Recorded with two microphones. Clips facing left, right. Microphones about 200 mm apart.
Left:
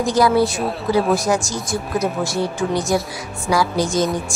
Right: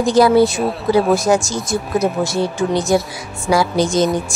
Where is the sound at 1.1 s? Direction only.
25° right (ahead or behind).